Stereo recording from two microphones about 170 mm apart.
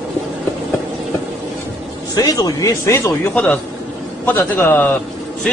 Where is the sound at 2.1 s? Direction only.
20° left (ahead or behind).